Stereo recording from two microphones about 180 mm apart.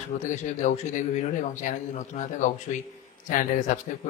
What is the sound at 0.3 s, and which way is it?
Speech, 40° left (ahead or behind).